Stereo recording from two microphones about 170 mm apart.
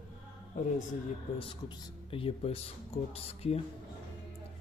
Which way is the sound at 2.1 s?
35° left (ahead or behind).